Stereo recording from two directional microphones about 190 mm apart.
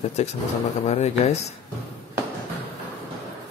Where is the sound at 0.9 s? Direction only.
35° left (ahead or behind).